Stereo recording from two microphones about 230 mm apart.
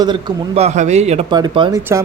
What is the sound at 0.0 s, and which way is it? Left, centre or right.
Speech, centre.